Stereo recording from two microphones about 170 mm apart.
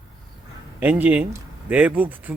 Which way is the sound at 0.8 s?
10° right (ahead or behind).